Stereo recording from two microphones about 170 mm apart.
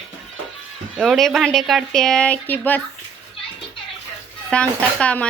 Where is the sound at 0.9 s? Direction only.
Centre (ahead or behind).